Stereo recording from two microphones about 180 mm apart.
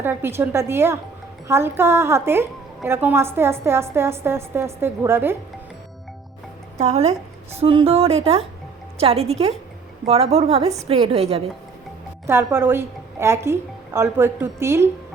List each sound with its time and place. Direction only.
0.0 s a woman's voice: 10° right (ahead or behind)
6.7 s a woman's voice: 40° right (ahead or behind)
12.2 s a woman's voice: 15° right (ahead or behind)